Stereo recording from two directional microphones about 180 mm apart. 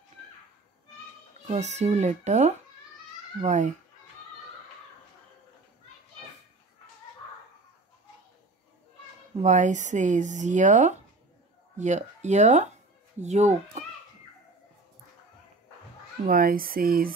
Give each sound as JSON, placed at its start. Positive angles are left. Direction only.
{"t": 1.5, "sound": "speech", "side_deg": -40}
{"t": 9.4, "sound": "speech", "side_deg": -45}
{"t": 16.3, "sound": "speech", "side_deg": -55}